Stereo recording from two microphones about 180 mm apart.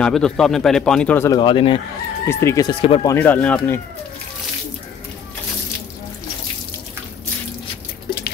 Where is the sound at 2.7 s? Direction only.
30° left (ahead or behind).